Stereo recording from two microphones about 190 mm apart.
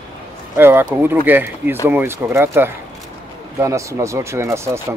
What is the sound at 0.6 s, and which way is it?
Speech, 10° right (ahead or behind).